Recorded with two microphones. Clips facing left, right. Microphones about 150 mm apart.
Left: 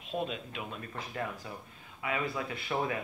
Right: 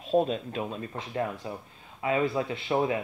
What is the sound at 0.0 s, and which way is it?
A man's voice, 35° right (ahead or behind).